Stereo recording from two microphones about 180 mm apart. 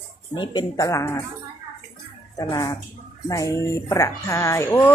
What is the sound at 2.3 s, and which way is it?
Speech, 20° left (ahead or behind).